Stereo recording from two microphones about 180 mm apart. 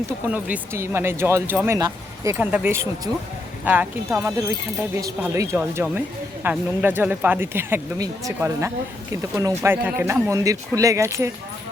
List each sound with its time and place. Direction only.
0.3 s speech: 10° right (ahead or behind)